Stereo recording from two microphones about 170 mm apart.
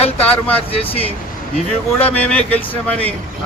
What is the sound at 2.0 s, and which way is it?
Speech, 10° left (ahead or behind).